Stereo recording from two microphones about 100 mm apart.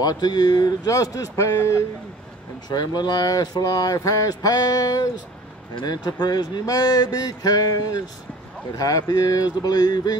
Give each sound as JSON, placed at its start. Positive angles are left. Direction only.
{"t": 0.0, "sound": "speech", "side_deg": 45}
{"t": 2.7, "sound": "speech", "side_deg": 45}